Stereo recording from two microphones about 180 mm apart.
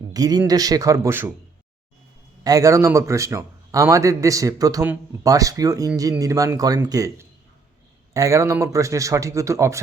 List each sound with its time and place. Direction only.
0.1 s speech: 20° right (ahead or behind)
2.4 s a man's voice: 20° right (ahead or behind)